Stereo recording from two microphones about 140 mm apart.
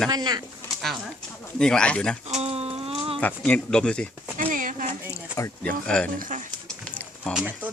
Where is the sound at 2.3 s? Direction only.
50° right (ahead or behind).